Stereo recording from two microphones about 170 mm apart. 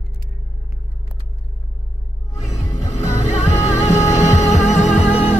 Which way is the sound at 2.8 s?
40° left (ahead or behind).